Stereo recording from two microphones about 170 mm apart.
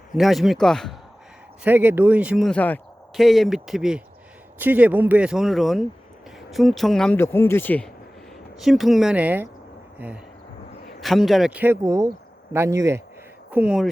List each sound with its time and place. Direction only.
0.1 s speech: centre (ahead or behind)
1.6 s speech: 10° right (ahead or behind)
2.5 s speech: 10° left (ahead or behind)
7.2 s speech: 15° left (ahead or behind)
8.5 s speech: centre (ahead or behind)
11.0 s speech: centre (ahead or behind); by 13.0 s 15° right (ahead or behind)
13.5 s speech: 5° right (ahead or behind)